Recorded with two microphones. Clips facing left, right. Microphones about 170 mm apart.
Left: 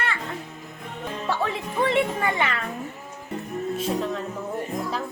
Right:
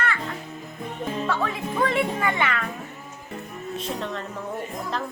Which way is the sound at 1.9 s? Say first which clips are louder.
Left 1 dB; 30° left (ahead or behind).